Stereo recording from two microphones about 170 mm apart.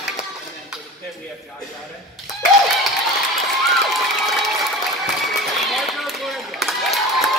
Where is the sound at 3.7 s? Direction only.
Centre (ahead or behind).